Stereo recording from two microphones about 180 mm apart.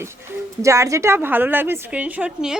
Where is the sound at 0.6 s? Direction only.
15° right (ahead or behind).